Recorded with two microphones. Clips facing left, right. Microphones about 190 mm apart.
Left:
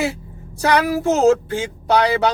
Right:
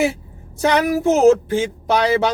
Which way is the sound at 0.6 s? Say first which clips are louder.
Right 1 dB; 20° right (ahead or behind).